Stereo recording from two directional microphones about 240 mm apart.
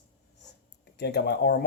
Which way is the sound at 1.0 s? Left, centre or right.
Left.